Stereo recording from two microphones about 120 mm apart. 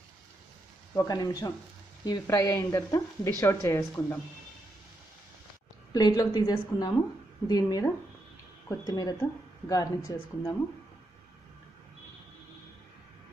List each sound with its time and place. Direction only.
0.9 s a woman's voice: 30° left (ahead or behind)
5.9 s a woman's voice: 35° left (ahead or behind)